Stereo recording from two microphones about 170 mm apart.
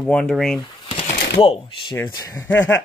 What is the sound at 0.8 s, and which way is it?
Sewing machine, 35° left (ahead or behind).